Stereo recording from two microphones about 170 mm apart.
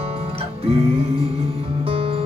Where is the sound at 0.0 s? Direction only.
35° right (ahead or behind).